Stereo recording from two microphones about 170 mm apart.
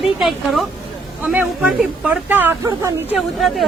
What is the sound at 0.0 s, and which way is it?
A woman's voice, centre (ahead or behind).